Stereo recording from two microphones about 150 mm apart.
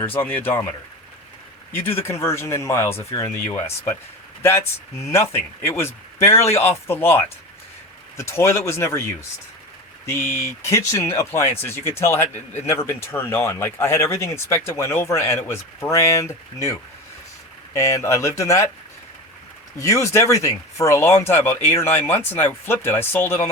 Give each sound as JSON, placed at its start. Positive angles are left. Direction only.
{"t": 0.0, "sound": "speech", "side_deg": 15}
{"t": 1.7, "sound": "speech", "side_deg": 15}
{"t": 10.1, "sound": "speech", "side_deg": 15}
{"t": 17.7, "sound": "speech", "side_deg": 20}
{"t": 19.8, "sound": "speech", "side_deg": 20}